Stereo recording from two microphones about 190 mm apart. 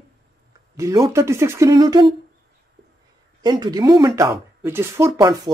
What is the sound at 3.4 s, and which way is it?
Speech, 20° right (ahead or behind).